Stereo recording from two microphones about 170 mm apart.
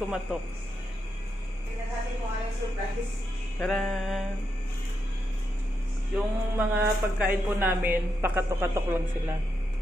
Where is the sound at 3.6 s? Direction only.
5° left (ahead or behind).